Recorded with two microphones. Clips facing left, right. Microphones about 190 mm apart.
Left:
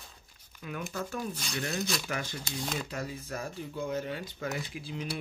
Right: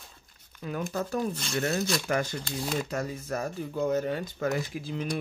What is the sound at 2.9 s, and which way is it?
Speech, 45° right (ahead or behind).